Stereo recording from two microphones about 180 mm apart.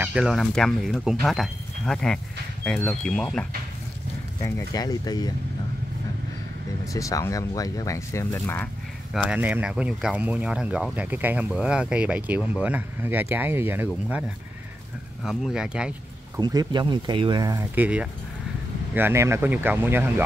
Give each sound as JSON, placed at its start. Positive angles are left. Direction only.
{"t": 0.0, "sound": "speech", "side_deg": -5}
{"t": 4.4, "sound": "speech", "side_deg": 20}
{"t": 6.9, "sound": "speech", "side_deg": 20}
{"t": 9.1, "sound": "speech", "side_deg": -5}
{"t": 15.2, "sound": "speech", "side_deg": -5}
{"t": 16.3, "sound": "speech", "side_deg": -25}
{"t": 17.7, "sound": "speech", "side_deg": -10}